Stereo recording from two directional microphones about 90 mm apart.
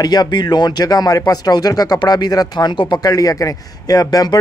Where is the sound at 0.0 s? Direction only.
50° left (ahead or behind).